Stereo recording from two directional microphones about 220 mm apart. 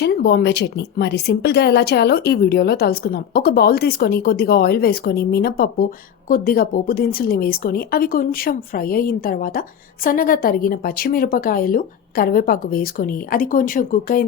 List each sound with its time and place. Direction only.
0.0 s a woman's voice: 45° left (ahead or behind)